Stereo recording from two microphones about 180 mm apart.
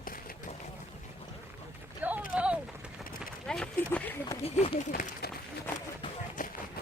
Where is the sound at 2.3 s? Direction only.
5° right (ahead or behind).